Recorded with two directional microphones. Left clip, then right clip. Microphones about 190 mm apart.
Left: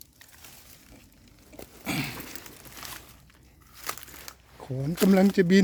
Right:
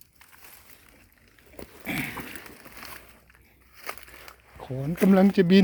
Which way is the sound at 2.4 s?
35° right (ahead or behind).